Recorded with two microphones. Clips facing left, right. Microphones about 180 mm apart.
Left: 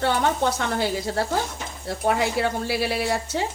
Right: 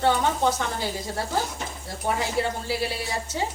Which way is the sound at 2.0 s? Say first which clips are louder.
Left 3 dB; 70° left (ahead or behind).